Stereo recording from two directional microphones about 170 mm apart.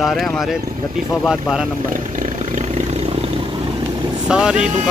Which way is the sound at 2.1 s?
45° right (ahead or behind).